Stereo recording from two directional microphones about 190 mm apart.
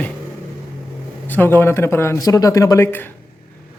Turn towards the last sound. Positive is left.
turn(degrees=10)  # may be behind; listen again after turning